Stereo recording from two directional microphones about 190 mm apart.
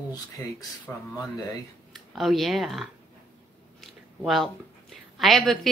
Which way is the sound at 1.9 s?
Centre (ahead or behind).